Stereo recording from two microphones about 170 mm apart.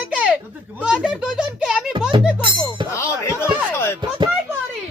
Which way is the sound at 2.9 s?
15° left (ahead or behind).